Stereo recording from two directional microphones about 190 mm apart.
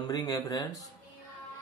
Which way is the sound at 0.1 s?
20° left (ahead or behind).